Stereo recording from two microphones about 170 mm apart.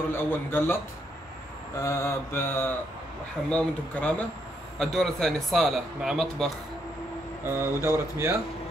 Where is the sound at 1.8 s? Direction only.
15° left (ahead or behind).